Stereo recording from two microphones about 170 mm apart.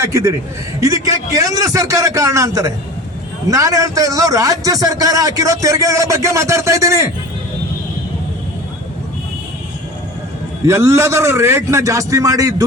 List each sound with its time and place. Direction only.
0.0 s a man's voice: 15° right (ahead or behind)
10.7 s a man's voice: 15° right (ahead or behind)